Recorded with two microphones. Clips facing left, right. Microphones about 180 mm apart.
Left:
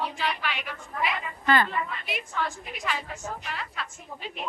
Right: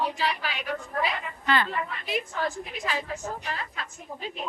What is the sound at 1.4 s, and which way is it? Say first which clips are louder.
Speech: left 2 dB; 45° left (ahead or behind).